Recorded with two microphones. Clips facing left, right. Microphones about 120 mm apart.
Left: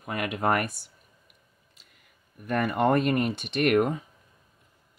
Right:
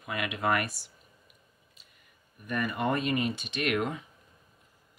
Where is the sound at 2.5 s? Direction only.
70° left (ahead or behind); by 4.0 s 50° left (ahead or behind).